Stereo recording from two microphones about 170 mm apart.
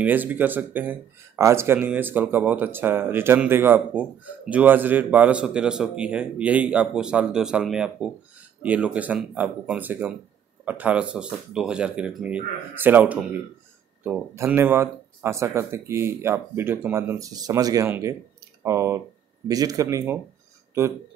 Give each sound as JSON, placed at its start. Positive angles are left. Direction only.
{"t": 0.0, "sound": "a man's voice", "side_deg": -10}